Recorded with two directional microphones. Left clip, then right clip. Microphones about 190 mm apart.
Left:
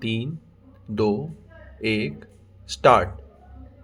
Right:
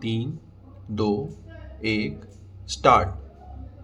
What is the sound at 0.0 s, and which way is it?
Speech, 25° left (ahead or behind).